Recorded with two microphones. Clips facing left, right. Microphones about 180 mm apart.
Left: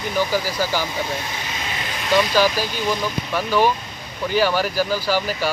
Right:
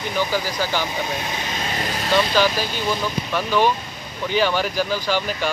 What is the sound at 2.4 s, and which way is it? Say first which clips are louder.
Speech: left 1 dB; 10° left (ahead or behind).